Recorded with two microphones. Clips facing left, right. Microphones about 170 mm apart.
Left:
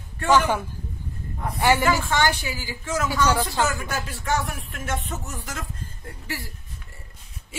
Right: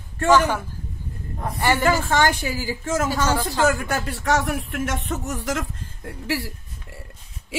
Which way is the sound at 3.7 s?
60° right (ahead or behind).